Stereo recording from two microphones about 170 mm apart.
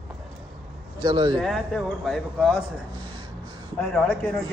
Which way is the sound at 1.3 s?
Centre (ahead or behind).